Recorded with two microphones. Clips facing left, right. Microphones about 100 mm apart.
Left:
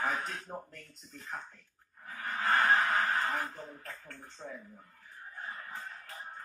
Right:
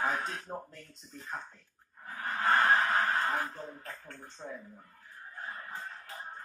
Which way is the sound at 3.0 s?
15° right (ahead or behind).